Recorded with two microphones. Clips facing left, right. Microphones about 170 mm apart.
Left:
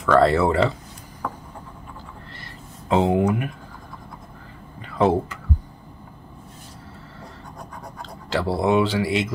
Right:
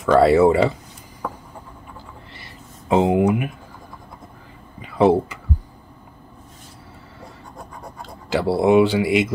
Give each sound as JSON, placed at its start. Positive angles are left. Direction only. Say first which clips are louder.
{"t": 0.0, "sound": "speech", "louder": "right 4 dB", "side_deg": -10}
{"t": 2.9, "sound": "speech", "louder": "right 2 dB", "side_deg": -20}
{"t": 4.8, "sound": "speech", "louder": "right 4 dB", "side_deg": -10}
{"t": 8.0, "sound": "speech", "louder": "right 3 dB", "side_deg": -10}